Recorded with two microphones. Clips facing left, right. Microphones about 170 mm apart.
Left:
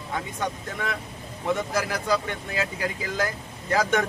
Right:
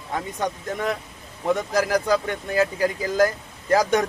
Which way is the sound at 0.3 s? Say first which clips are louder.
Right 4 dB; 40° right (ahead or behind).